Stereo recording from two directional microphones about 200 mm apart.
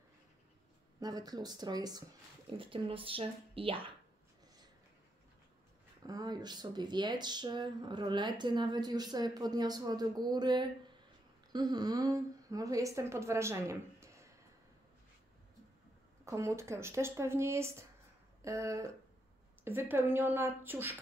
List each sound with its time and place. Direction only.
0.9 s speech: 20° right (ahead or behind)
6.0 s a woman's voice: 20° right (ahead or behind)
16.3 s speech: 15° right (ahead or behind)